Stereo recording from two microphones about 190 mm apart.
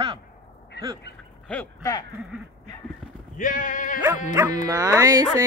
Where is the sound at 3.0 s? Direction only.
5° left (ahead or behind).